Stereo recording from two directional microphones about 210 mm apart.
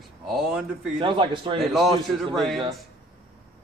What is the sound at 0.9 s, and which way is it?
Speech, 25° right (ahead or behind).